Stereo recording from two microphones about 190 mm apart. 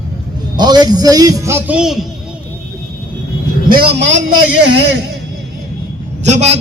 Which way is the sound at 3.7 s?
55° right (ahead or behind).